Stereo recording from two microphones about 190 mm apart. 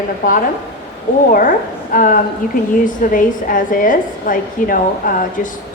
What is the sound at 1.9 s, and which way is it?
A woman's voice, 45° left (ahead or behind).